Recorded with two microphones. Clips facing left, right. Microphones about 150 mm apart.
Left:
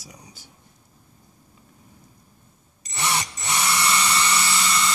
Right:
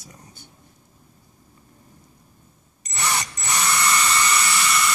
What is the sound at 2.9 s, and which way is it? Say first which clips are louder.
Drill: even; 20° left (ahead or behind).